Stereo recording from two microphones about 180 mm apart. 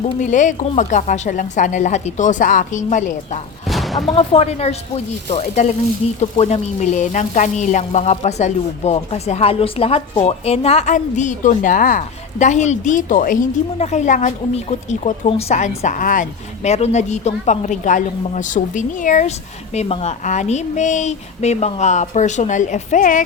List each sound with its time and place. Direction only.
0.1 s a woman's voice: 40° left (ahead or behind)
3.7 s a sound: centre (ahead or behind)
4.1 s a woman's voice: 35° left (ahead or behind)